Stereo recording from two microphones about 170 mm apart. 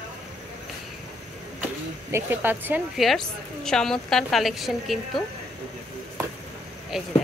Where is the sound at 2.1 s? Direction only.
10° right (ahead or behind).